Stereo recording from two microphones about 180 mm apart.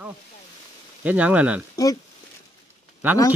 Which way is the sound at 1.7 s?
20° left (ahead or behind).